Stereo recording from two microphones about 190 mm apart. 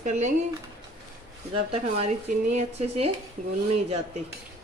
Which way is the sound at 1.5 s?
30° right (ahead or behind).